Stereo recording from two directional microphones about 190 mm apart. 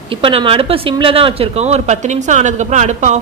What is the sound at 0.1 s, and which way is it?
Speech, 30° right (ahead or behind).